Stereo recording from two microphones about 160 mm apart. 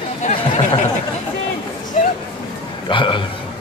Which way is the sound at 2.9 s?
30° left (ahead or behind).